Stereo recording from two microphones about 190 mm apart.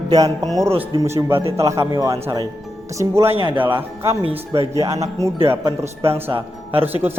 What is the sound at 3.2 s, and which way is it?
Speech, 30° right (ahead or behind).